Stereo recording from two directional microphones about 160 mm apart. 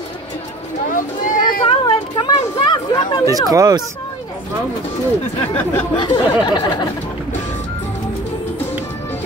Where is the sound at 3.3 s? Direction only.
20° right (ahead or behind).